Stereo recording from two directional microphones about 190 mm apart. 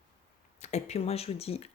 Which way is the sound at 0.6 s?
35° left (ahead or behind).